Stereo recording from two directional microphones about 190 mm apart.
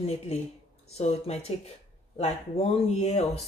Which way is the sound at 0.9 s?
35° left (ahead or behind).